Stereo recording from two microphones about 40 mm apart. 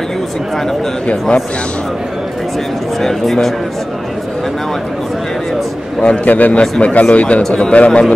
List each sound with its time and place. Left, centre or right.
3.0 s a man's voice: centre
6.0 s a man's voice: left